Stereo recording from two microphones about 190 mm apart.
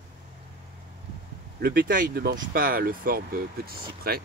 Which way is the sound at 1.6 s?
55° right (ahead or behind).